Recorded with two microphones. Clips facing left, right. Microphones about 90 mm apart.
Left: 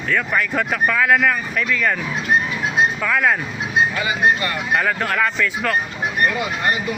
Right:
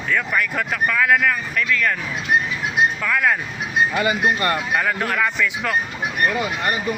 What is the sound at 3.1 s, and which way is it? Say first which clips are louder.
Speech: left 1 dB; 5° left (ahead or behind).